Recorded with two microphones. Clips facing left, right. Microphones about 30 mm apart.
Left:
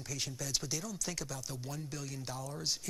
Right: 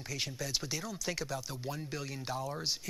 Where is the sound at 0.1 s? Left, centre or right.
Right.